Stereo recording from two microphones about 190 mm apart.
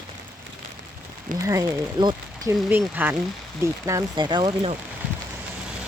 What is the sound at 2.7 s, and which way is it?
Speech, 10° right (ahead or behind).